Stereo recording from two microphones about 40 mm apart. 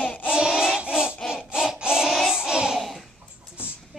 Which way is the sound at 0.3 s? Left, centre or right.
Centre.